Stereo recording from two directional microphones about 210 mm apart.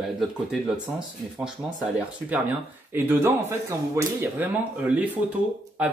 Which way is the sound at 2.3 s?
10° right (ahead or behind).